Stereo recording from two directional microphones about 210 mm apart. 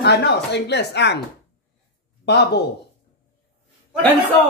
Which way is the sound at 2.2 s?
50° left (ahead or behind).